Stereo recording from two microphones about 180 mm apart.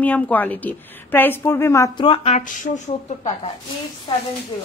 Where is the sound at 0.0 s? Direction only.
10° left (ahead or behind).